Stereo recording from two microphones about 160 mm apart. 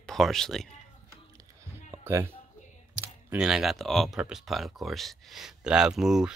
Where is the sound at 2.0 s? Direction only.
15° right (ahead or behind).